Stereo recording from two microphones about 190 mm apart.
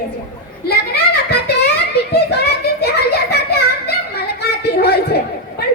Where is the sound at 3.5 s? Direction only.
60° left (ahead or behind).